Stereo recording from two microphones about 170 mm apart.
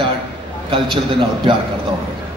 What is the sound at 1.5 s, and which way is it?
Speech, 30° right (ahead or behind).